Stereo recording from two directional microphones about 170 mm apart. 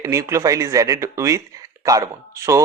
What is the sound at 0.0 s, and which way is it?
Speech, 15° right (ahead or behind).